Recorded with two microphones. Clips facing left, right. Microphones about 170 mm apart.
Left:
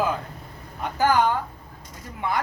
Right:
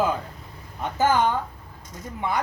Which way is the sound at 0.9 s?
20° right (ahead or behind).